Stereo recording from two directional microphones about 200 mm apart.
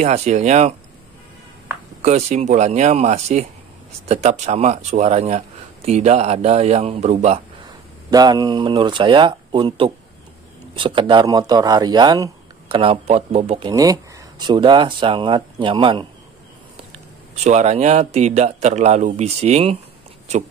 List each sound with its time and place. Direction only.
0.0 s a man's voice: 35° right (ahead or behind)
2.0 s a man's voice: 35° right (ahead or behind)
8.1 s speech: 20° right (ahead or behind)
17.4 s a man's voice: 35° right (ahead or behind)